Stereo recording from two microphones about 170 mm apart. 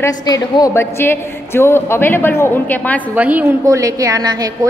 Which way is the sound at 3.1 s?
10° right (ahead or behind).